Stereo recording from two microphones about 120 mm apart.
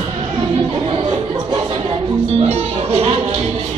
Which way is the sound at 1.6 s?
50° right (ahead or behind).